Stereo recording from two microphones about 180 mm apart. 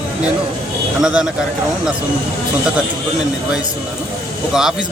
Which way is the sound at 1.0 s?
5° right (ahead or behind).